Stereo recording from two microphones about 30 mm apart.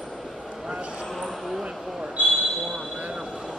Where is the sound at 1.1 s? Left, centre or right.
Centre.